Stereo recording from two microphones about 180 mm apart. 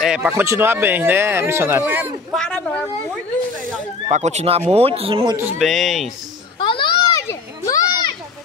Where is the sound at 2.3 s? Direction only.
5° left (ahead or behind).